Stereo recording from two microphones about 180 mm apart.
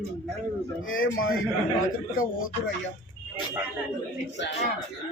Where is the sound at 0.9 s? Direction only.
90° left.